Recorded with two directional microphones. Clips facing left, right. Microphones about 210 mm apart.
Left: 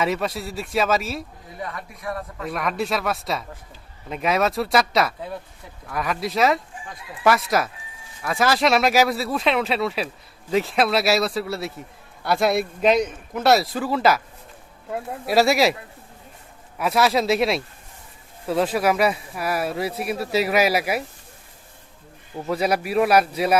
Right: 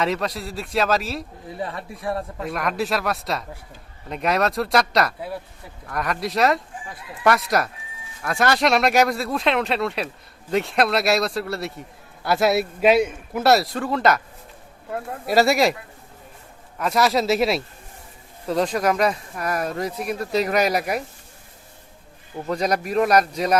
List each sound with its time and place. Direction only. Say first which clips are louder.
0.0 s a man's voice: even; 5° left (ahead or behind)
1.5 s speech: right 3 dB; 30° right (ahead or behind)
2.4 s a man's voice: left 2 dB; centre (ahead or behind)
15.3 s a man's voice: even; centre (ahead or behind)
16.7 s a man's voice: even; 5° left (ahead or behind)
22.4 s speech: left 1 dB; 5° left (ahead or behind)